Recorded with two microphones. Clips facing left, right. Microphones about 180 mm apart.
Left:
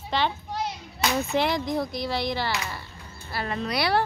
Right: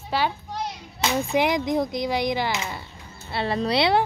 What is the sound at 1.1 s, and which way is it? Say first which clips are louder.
A woman's voice: right 3 dB; 15° right (ahead or behind).